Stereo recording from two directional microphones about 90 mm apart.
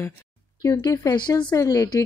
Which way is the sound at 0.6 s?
45° left (ahead or behind).